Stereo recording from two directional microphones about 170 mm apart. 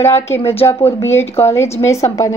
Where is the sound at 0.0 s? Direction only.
15° left (ahead or behind).